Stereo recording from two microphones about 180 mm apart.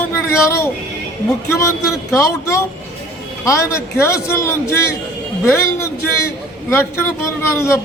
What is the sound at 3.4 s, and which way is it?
A man's voice, 15° left (ahead or behind).